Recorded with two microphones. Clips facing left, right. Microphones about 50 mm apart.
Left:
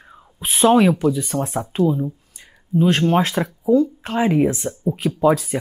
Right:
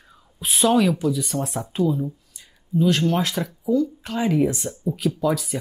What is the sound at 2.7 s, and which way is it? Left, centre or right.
Speech, left.